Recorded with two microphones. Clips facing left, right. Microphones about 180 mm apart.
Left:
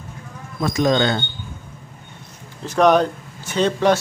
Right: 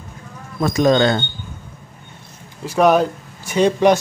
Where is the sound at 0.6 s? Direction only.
45° right (ahead or behind).